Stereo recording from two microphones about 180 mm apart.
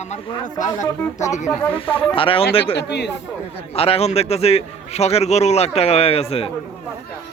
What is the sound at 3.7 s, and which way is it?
A man's voice, 35° left (ahead or behind).